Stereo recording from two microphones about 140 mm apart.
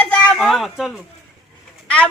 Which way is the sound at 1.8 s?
10° left (ahead or behind).